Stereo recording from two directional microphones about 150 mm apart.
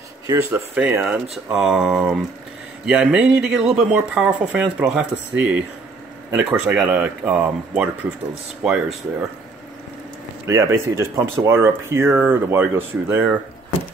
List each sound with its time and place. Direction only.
0.3 s speech: 15° right (ahead or behind)
10.4 s speech: 20° right (ahead or behind)